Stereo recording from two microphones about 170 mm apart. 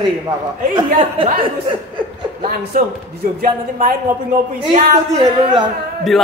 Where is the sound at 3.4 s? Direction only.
55° right (ahead or behind).